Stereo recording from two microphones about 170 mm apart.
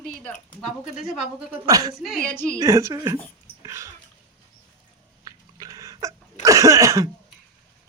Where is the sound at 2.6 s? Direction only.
15° right (ahead or behind).